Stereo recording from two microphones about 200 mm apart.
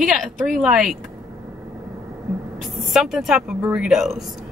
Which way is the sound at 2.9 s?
Centre (ahead or behind).